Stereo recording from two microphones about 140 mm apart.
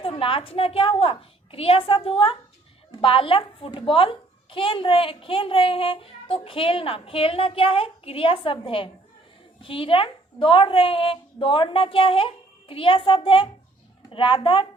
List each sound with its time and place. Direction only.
0.0 s a woman's voice: 40° left (ahead or behind)